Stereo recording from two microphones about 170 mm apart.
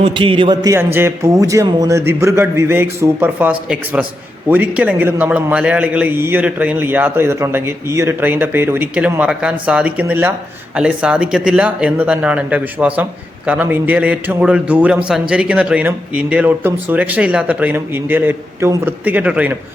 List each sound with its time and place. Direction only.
0.0 s a man's voice: 30° right (ahead or behind); by 19.5 s 10° right (ahead or behind)